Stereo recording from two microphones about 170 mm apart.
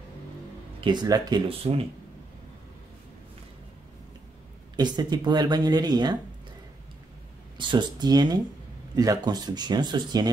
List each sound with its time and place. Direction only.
0.7 s speech: 25° right (ahead or behind)
1.6 s speech: 35° right (ahead or behind)
4.7 s speech: 25° right (ahead or behind)
7.5 s speech: 25° right (ahead or behind)